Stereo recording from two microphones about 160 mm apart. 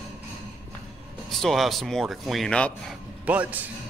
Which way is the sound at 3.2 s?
10° right (ahead or behind).